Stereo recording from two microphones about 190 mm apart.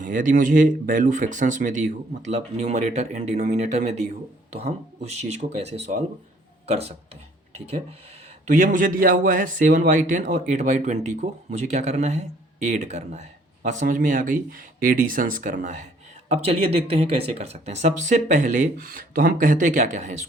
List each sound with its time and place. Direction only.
0.0 s speech: 45° right (ahead or behind)